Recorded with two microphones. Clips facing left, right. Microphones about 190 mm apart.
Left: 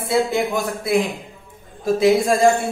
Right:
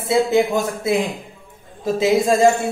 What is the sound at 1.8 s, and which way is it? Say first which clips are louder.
Speech: left 1 dB; 20° right (ahead or behind).